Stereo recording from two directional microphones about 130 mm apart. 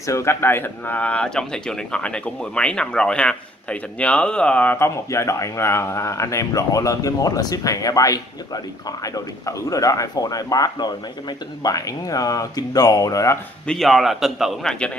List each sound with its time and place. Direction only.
0.0 s speech: 20° left (ahead or behind)
13.7 s a man's voice: centre (ahead or behind)